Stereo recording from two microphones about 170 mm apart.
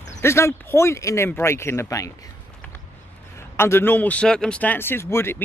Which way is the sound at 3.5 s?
15° left (ahead or behind).